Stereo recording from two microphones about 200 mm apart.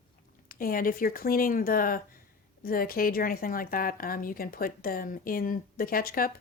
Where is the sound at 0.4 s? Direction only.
45° left (ahead or behind).